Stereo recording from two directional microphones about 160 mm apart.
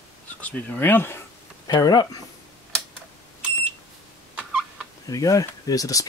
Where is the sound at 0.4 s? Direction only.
10° left (ahead or behind).